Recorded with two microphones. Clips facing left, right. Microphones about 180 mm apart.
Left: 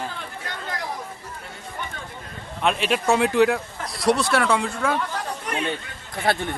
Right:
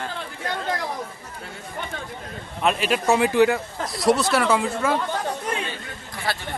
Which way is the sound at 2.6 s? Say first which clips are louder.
Even; centre (ahead or behind).